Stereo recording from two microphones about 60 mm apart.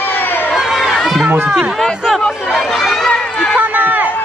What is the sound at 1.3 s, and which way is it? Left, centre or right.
Speech, right.